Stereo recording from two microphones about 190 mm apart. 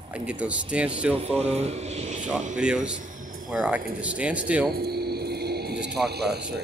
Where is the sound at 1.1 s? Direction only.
30° right (ahead or behind).